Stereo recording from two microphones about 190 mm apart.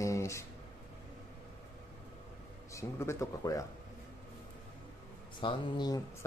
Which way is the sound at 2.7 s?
15° left (ahead or behind).